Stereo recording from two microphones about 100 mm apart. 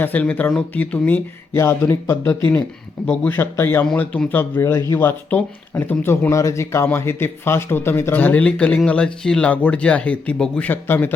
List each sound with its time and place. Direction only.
0.0 s speech: 15° left (ahead or behind)